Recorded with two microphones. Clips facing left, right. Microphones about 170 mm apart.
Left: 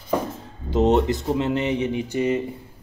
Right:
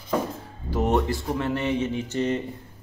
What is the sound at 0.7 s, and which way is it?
Speech, 20° left (ahead or behind).